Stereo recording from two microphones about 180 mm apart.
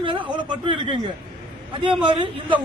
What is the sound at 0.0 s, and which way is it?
Speech, 25° right (ahead or behind).